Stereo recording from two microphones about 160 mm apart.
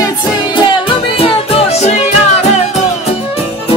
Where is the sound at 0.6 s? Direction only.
35° left (ahead or behind).